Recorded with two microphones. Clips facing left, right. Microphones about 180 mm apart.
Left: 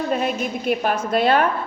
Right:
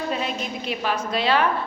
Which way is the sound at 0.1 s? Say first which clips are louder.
Left 5 dB; 50° left (ahead or behind).